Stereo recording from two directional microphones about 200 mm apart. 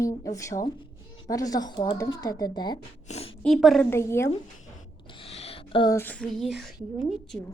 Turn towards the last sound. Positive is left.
turn(degrees=0)  # may be behind; listen again after turning